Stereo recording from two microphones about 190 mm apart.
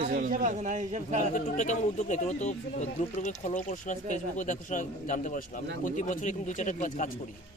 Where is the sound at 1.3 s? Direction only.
40° left (ahead or behind).